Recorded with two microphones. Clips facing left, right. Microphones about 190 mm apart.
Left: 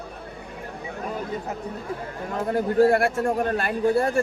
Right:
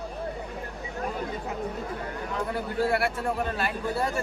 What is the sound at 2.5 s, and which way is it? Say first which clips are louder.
A man's voice: left 9 dB; 45° left (ahead or behind).